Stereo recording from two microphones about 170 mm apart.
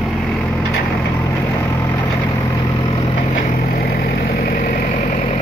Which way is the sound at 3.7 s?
65° left (ahead or behind).